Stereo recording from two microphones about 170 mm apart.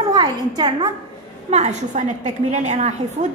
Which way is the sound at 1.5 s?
45° right (ahead or behind).